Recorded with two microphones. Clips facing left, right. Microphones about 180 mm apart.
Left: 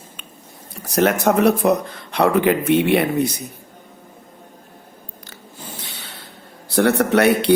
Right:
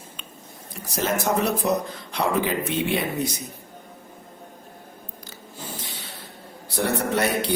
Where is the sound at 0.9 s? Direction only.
65° left (ahead or behind).